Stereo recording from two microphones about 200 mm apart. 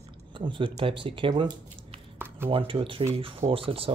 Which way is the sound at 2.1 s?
10° right (ahead or behind).